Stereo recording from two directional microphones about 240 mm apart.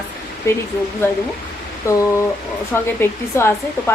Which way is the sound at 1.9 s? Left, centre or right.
Centre.